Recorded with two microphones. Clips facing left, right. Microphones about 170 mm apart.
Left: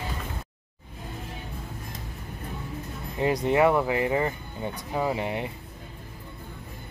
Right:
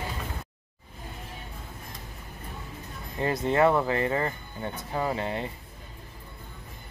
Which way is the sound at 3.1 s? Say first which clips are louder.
Left 2 dB; 15° left (ahead or behind).